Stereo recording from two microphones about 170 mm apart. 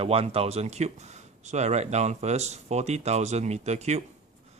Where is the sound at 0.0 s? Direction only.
35° right (ahead or behind).